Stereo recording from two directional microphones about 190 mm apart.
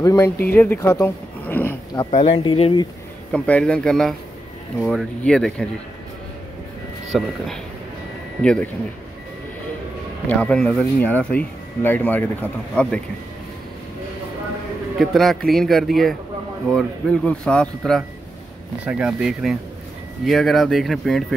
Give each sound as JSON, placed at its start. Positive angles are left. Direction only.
{"t": 0.0, "sound": "speech", "side_deg": 20}
{"t": 2.0, "sound": "speech", "side_deg": 25}
{"t": 3.3, "sound": "a man's voice", "side_deg": 5}
{"t": 7.1, "sound": "a man's voice", "side_deg": 0}
{"t": 10.2, "sound": "speech", "side_deg": 5}
{"t": 15.0, "sound": "a man's voice", "side_deg": 0}